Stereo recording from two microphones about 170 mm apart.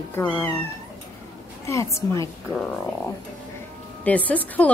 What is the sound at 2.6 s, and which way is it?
Speech, 5° left (ahead or behind).